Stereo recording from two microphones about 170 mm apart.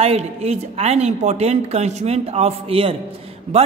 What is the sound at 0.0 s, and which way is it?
A woman's voice, 40° right (ahead or behind).